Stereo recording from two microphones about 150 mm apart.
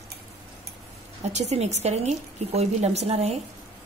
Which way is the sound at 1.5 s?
45° right (ahead or behind).